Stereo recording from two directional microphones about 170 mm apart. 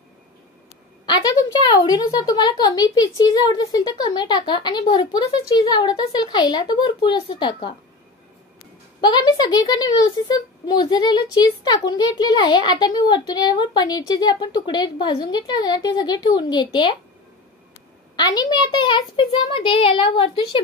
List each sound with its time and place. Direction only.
1.0 s a woman's voice: 25° left (ahead or behind)
9.0 s a woman's voice: 25° left (ahead or behind)
18.1 s a woman's voice: 25° left (ahead or behind)